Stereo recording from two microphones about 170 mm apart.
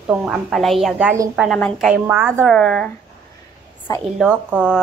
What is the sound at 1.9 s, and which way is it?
Speech, 10° right (ahead or behind).